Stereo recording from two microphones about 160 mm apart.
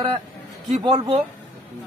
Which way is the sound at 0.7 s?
40° right (ahead or behind).